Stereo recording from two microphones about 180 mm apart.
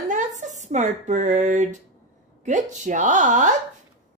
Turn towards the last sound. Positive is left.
turn(degrees=-45)  # may be behind; listen again after turning